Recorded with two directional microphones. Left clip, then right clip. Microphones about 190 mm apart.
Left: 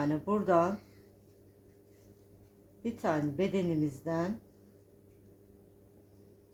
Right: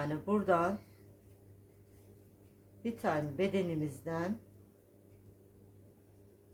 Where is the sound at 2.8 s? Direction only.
20° left (ahead or behind).